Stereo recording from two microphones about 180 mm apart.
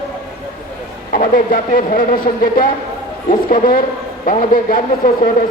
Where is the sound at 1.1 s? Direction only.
50° left (ahead or behind).